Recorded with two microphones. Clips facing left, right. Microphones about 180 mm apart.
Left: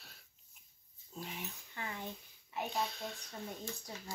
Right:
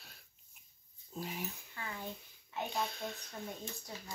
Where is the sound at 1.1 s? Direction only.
5° right (ahead or behind).